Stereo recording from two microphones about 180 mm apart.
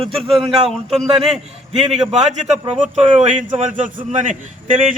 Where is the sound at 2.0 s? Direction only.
40° right (ahead or behind).